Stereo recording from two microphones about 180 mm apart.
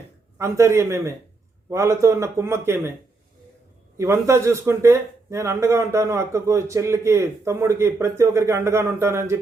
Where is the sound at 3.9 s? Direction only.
15° right (ahead or behind).